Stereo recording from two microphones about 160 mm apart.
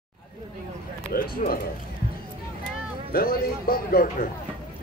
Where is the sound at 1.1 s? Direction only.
70° left (ahead or behind).